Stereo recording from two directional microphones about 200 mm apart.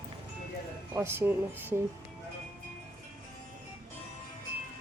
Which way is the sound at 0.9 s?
10° right (ahead or behind).